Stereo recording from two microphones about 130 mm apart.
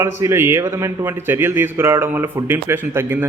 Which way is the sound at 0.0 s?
20° right (ahead or behind).